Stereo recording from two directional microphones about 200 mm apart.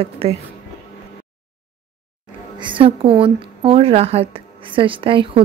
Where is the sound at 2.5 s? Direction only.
25° right (ahead or behind).